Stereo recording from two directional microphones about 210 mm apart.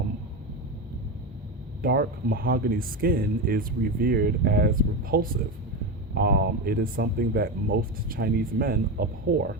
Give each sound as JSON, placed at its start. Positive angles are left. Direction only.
{"t": 1.8, "sound": "speech", "side_deg": -45}